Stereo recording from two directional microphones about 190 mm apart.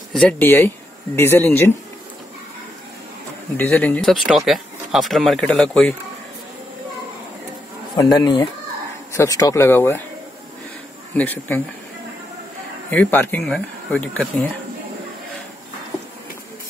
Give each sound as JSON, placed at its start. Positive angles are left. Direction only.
{"t": 0.1, "sound": "speech", "side_deg": 5}
{"t": 3.5, "sound": "speech", "side_deg": 10}
{"t": 7.9, "sound": "speech", "side_deg": 20}
{"t": 11.1, "sound": "speech", "side_deg": 10}
{"t": 12.9, "sound": "speech", "side_deg": 10}